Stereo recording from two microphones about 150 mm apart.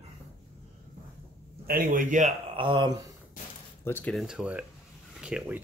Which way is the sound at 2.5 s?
35° right (ahead or behind).